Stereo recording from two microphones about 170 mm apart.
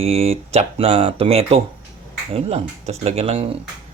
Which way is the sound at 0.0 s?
35° right (ahead or behind).